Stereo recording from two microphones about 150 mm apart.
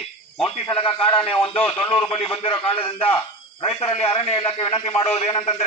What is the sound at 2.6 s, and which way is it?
A man's voice, 40° left (ahead or behind).